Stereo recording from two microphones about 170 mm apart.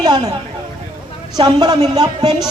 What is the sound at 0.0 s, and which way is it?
Speech, 25° right (ahead or behind).